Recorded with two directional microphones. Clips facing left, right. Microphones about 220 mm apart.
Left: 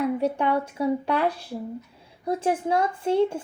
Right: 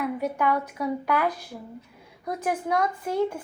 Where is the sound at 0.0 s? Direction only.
30° left (ahead or behind).